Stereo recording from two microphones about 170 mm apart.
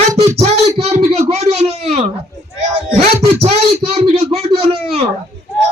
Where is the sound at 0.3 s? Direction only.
40° right (ahead or behind).